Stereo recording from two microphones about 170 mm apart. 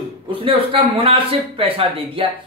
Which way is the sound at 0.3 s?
30° right (ahead or behind).